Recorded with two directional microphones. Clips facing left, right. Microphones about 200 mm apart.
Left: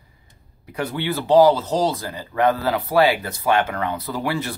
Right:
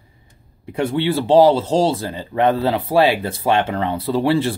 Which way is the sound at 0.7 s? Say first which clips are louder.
Right 6 dB; 25° right (ahead or behind).